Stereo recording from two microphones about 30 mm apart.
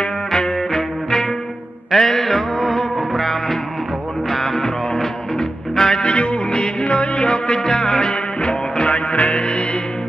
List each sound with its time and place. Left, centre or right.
0.3 s music: centre
6.0 s music: left
8.4 s music: left
9.1 s music: left
9.4 s music: left